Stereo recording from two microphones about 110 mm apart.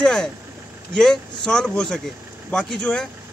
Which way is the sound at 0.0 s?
5° left (ahead or behind).